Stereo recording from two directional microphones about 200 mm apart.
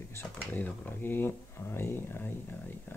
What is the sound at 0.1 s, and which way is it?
Speech, 10° left (ahead or behind).